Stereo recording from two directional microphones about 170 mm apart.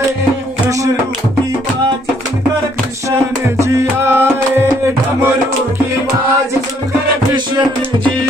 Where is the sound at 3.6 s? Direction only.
15° right (ahead or behind).